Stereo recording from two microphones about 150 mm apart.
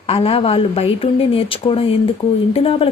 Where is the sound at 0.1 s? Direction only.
40° left (ahead or behind).